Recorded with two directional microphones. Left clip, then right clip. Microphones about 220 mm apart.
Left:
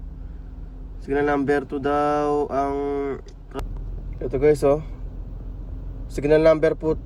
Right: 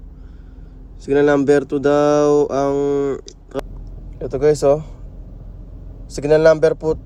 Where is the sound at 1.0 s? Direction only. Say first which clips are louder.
Right 7 dB; 20° right (ahead or behind).